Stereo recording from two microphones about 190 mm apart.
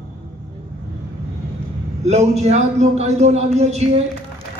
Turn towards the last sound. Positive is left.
turn(degrees=-35)  # may be behind; listen again after turning